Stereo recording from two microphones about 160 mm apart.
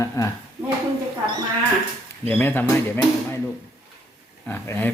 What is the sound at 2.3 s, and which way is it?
Speech, 10° left (ahead or behind).